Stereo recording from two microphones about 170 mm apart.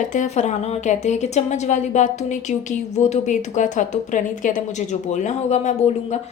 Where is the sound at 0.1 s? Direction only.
45° left (ahead or behind).